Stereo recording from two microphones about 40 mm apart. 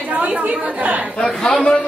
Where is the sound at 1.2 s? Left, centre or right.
Centre.